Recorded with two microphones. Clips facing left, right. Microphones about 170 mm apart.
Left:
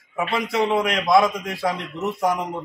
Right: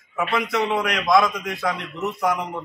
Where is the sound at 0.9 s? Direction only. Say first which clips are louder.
Left 1 dB; 30° left (ahead or behind).